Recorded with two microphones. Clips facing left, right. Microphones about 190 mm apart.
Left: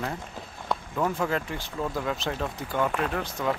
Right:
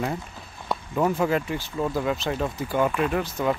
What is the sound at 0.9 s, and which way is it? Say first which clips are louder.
Speech: right 5 dB; 10° right (ahead or behind).